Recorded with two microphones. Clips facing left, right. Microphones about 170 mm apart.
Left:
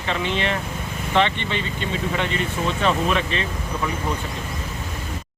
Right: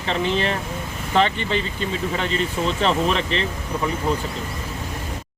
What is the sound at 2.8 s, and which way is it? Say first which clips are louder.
Speech: even; 30° right (ahead or behind).